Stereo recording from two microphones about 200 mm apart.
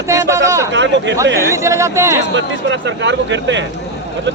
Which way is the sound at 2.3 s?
65° right (ahead or behind).